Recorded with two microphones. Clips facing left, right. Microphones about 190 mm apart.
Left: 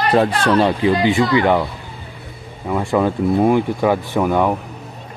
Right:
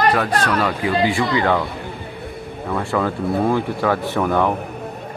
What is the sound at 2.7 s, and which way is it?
Speech, 15° left (ahead or behind).